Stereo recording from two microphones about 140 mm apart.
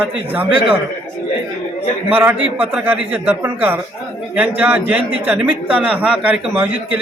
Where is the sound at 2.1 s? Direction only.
15° right (ahead or behind).